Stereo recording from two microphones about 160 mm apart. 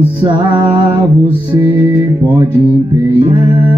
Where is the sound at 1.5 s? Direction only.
30° right (ahead or behind).